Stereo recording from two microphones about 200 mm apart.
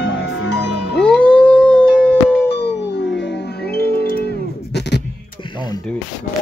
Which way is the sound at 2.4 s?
55° left (ahead or behind).